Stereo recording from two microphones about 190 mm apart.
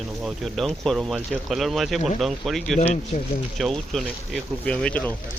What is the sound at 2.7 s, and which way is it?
Speech, 35° left (ahead or behind).